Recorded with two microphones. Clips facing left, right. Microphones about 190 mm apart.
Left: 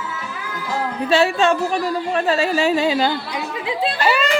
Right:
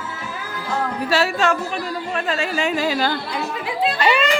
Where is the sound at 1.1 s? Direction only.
25° left (ahead or behind).